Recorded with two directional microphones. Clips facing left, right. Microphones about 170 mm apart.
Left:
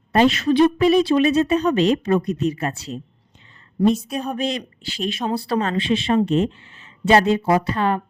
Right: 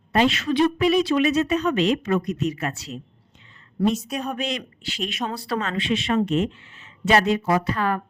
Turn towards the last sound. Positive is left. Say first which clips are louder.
# left 3 dB
turn(degrees=25)  # may be behind; listen again after turning